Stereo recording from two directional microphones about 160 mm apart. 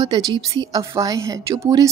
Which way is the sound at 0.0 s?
30° right (ahead or behind).